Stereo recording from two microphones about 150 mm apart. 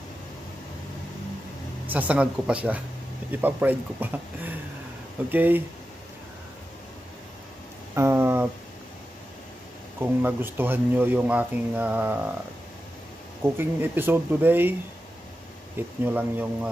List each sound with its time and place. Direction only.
1.9 s speech: 10° right (ahead or behind)
7.9 s a sound: 15° right (ahead or behind)
9.9 s speech: 15° right (ahead or behind)
13.4 s speech: 15° right (ahead or behind)